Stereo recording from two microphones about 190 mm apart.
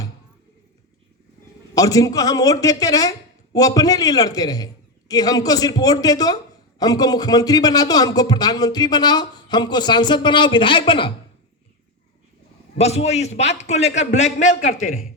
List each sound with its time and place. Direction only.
1.7 s speech: 20° left (ahead or behind)
12.7 s a man's voice: 35° left (ahead or behind)